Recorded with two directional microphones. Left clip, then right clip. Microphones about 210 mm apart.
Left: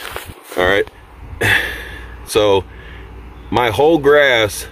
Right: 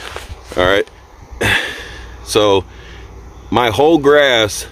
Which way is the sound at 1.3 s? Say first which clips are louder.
Even; 25° right (ahead or behind).